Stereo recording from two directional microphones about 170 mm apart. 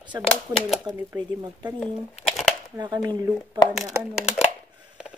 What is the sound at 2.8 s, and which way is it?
Speech, 25° right (ahead or behind).